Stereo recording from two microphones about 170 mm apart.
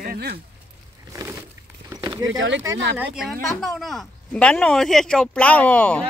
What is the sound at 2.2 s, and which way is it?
Speech, 90° right.